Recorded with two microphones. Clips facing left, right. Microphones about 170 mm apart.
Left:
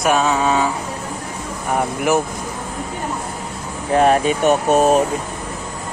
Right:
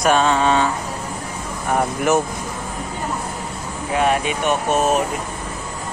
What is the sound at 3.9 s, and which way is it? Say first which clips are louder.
Speech: left 5 dB; 40° left (ahead or behind).